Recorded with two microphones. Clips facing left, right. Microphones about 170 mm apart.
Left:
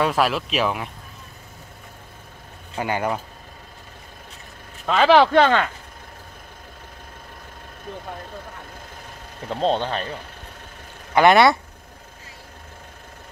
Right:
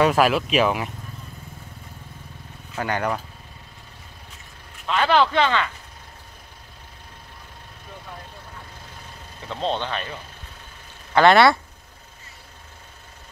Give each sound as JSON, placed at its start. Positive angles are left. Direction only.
{"t": 0.0, "sound": "speech", "side_deg": -5}
{"t": 2.8, "sound": "speech", "side_deg": 10}
{"t": 4.9, "sound": "speech", "side_deg": 75}
{"t": 9.5, "sound": "speech", "side_deg": 40}
{"t": 11.1, "sound": "speech", "side_deg": 15}